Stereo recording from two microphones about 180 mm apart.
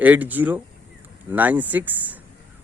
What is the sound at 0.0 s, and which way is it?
Speech, 10° right (ahead or behind).